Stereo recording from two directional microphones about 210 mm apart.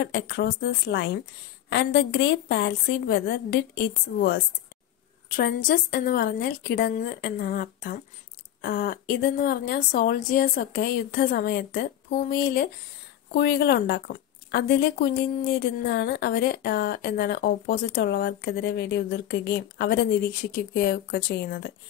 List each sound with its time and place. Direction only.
0.0 s a woman's voice: 50° left (ahead or behind)